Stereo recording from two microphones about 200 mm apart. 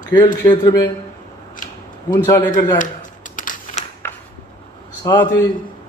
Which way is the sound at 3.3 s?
40° left (ahead or behind).